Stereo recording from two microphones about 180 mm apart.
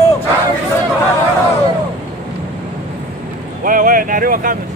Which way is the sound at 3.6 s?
50° right (ahead or behind).